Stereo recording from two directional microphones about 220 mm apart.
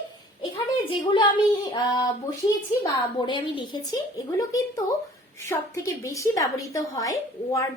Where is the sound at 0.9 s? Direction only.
20° left (ahead or behind).